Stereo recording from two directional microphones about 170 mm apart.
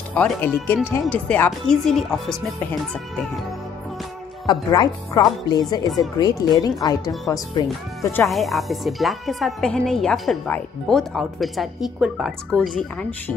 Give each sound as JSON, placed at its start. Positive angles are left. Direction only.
{"t": 0.1, "sound": "speech", "side_deg": 10}
{"t": 4.5, "sound": "speech", "side_deg": 25}
{"t": 8.3, "sound": "speech", "side_deg": 0}